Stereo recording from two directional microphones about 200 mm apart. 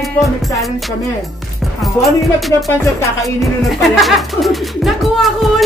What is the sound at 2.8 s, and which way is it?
Music, 15° left (ahead or behind).